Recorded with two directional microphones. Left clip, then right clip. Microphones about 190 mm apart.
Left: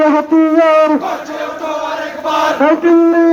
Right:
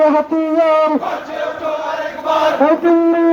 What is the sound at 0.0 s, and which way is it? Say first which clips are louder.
Speech: left 2 dB; centre (ahead or behind).